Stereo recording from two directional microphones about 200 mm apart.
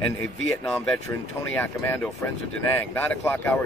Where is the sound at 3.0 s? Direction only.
10° left (ahead or behind).